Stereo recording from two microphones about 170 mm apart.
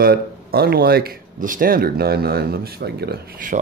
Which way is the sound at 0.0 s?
65° right (ahead or behind).